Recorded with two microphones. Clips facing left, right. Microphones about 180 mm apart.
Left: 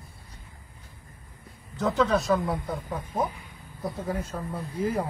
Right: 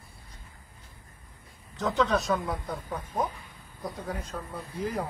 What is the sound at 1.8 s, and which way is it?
Speech, centre (ahead or behind).